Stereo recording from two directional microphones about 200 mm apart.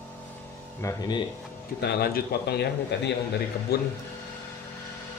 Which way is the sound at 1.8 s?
50° left (ahead or behind).